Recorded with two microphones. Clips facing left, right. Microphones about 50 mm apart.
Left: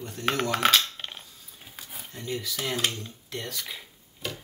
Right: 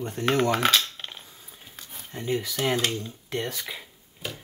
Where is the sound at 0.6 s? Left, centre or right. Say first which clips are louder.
Even; centre.